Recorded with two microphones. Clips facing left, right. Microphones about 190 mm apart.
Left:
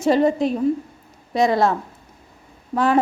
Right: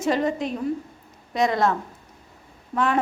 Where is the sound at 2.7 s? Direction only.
35° left (ahead or behind).